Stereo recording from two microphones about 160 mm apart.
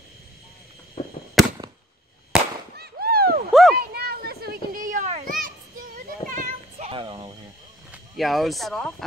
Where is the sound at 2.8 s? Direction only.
70° right (ahead or behind); by 5.1 s 55° right (ahead or behind).